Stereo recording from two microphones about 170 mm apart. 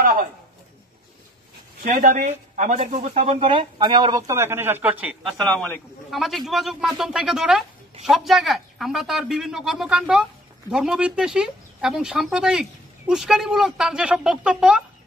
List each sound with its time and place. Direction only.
1.8 s speech: 55° right (ahead or behind); by 4.2 s 25° right (ahead or behind)
4.3 s speech: 15° right (ahead or behind)
5.2 s speech: 5° left (ahead or behind)